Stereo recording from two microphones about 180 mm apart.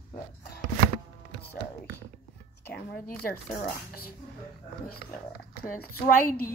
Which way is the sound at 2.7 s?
65° left (ahead or behind).